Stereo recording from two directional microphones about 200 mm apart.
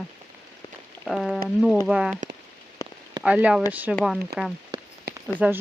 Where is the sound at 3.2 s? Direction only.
5° right (ahead or behind).